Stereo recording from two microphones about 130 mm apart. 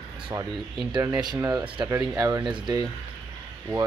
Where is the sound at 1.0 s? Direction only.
30° right (ahead or behind).